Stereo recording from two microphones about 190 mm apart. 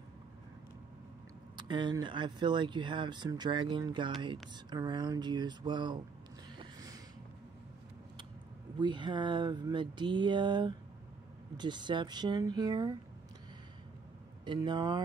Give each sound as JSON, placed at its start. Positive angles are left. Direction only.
{"t": 1.6, "sound": "speech", "side_deg": -25}
{"t": 6.6, "sound": "a sound", "side_deg": -20}
{"t": 8.7, "sound": "speech", "side_deg": -25}
{"t": 14.4, "sound": "speech", "side_deg": -25}